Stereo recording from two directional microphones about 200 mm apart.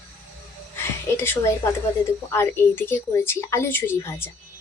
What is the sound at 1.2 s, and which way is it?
Speech, 10° left (ahead or behind).